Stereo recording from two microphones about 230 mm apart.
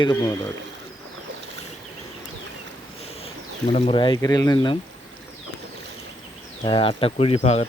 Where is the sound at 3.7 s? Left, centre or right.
Left.